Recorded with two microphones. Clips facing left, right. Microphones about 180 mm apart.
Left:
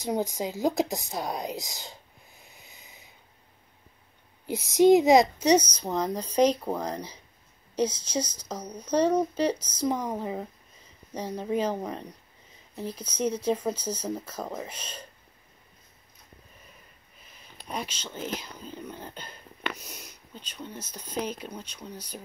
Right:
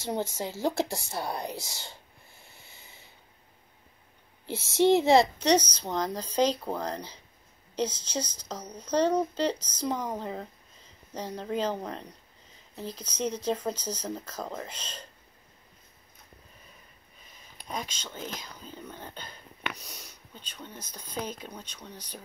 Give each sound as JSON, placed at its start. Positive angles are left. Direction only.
{"t": 0.4, "sound": "speech", "side_deg": 15}
{"t": 2.4, "sound": "a sound", "side_deg": 15}
{"t": 4.5, "sound": "a woman's voice", "side_deg": 15}
{"t": 17.6, "sound": "speech", "side_deg": 10}